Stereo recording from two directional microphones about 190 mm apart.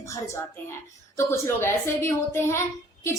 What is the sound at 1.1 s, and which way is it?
A woman's voice, 15° left (ahead or behind).